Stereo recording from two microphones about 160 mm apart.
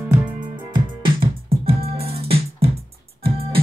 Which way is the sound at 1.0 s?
35° right (ahead or behind).